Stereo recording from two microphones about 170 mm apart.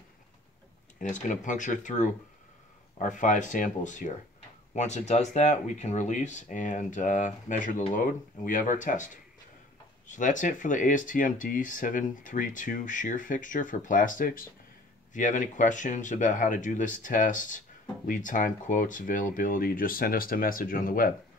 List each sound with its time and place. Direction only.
0.9 s speech: 45° left (ahead or behind)